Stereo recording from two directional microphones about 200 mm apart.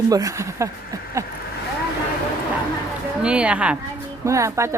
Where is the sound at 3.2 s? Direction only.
5° right (ahead or behind).